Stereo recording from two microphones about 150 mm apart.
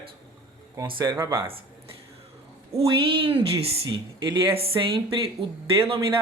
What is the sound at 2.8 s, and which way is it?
Speech, 40° right (ahead or behind).